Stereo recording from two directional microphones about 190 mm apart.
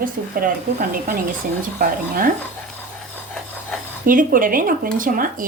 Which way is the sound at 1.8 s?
50° right (ahead or behind).